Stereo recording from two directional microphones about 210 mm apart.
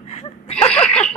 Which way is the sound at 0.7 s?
5° left (ahead or behind).